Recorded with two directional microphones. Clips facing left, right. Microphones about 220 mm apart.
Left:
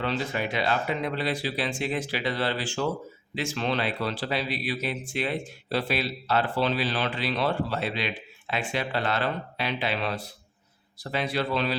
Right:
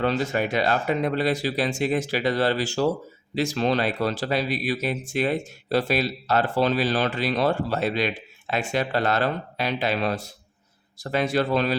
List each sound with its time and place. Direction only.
0.0 s speech: 45° right (ahead or behind)